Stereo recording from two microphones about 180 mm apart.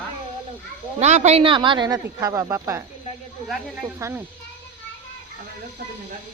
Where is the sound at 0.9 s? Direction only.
40° right (ahead or behind); by 2.8 s 15° right (ahead or behind).